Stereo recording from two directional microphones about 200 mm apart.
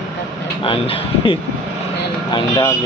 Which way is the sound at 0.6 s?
25° left (ahead or behind).